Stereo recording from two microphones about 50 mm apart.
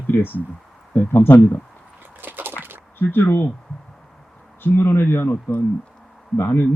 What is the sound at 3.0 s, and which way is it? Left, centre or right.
Speech, left.